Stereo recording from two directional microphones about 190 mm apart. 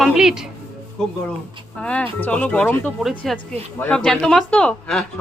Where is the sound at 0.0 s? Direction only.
5° right (ahead or behind).